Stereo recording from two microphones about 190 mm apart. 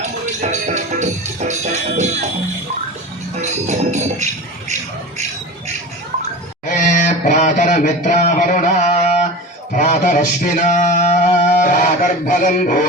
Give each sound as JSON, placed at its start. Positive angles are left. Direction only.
{"t": 0.0, "sound": "music", "side_deg": -40}
{"t": 3.4, "sound": "music", "side_deg": -35}
{"t": 6.7, "sound": "a sound", "side_deg": 40}